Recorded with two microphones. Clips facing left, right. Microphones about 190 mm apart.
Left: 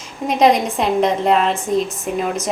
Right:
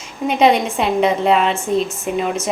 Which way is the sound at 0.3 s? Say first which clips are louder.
Even; centre (ahead or behind).